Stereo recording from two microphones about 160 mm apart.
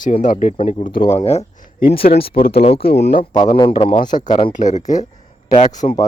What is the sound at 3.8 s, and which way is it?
Speech, 30° left (ahead or behind).